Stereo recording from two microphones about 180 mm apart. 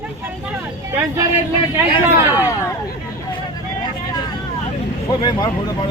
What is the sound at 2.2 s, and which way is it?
Speech, 15° right (ahead or behind).